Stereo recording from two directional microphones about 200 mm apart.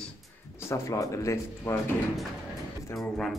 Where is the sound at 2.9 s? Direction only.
Centre (ahead or behind).